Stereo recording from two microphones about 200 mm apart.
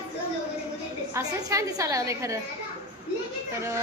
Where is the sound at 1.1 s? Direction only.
15° right (ahead or behind).